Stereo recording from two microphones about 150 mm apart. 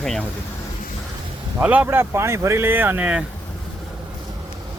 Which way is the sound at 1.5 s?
10° right (ahead or behind).